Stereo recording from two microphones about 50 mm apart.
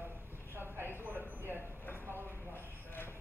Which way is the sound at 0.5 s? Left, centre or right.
Right.